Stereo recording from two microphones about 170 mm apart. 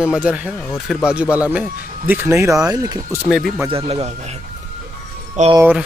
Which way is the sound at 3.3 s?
5° right (ahead or behind).